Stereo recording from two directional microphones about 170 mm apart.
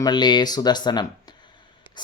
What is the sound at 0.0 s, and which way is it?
Speech, 25° left (ahead or behind).